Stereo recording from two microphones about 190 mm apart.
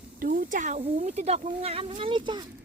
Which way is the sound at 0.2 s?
45° right (ahead or behind).